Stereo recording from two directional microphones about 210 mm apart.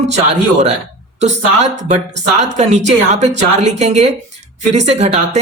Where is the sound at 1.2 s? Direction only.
35° right (ahead or behind).